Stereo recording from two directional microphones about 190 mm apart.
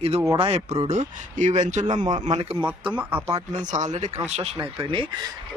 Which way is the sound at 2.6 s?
10° right (ahead or behind).